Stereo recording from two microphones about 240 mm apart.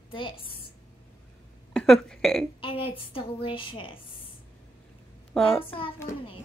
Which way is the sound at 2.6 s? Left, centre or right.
Left.